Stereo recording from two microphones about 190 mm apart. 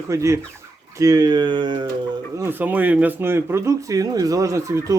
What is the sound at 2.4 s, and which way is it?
Speech, 10° right (ahead or behind).